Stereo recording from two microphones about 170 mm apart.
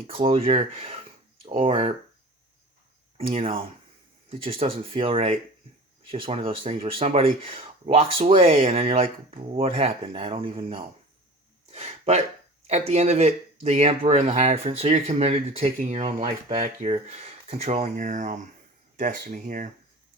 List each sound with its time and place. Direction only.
0.1 s speech: 35° right (ahead or behind)
3.2 s speech: 35° right (ahead or behind)
11.7 s a sound: 40° right (ahead or behind)
12.6 s speech: 40° right (ahead or behind)